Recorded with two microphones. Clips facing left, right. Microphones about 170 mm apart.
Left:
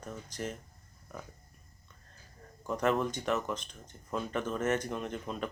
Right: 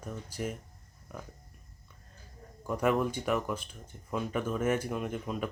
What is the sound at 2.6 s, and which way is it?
Speech, 10° right (ahead or behind).